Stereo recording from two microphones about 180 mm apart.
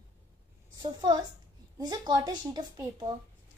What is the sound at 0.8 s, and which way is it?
A woman's voice, 25° right (ahead or behind).